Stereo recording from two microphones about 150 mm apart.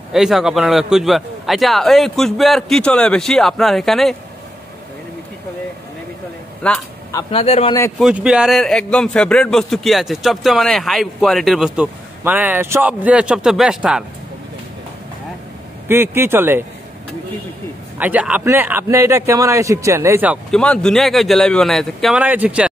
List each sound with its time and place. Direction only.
0.1 s a man's voice: 5° right (ahead or behind)
6.6 s speech: 10° left (ahead or behind)
7.2 s a man's voice: 40° left (ahead or behind)
8.0 s a man's voice: 5° right (ahead or behind)
15.9 s a man's voice: 15° right (ahead or behind)
17.9 s a man's voice: 10° right (ahead or behind)
20.5 s a man's voice: 5° left (ahead or behind)
22.2 s a man's voice: 10° right (ahead or behind)